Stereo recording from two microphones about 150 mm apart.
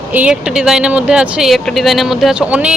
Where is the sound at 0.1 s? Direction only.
10° right (ahead or behind).